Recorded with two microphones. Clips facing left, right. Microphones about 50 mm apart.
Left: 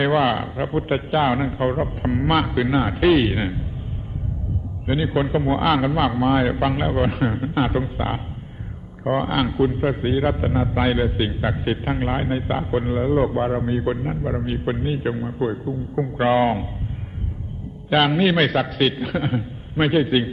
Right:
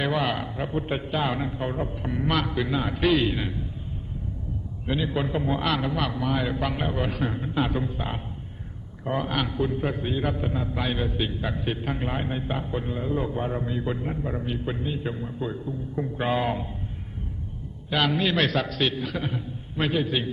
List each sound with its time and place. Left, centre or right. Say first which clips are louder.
0.0 s a man's voice: left 7 dB; left
4.9 s a man's voice: left 6 dB; left
17.8 s a man's voice: left 6 dB; left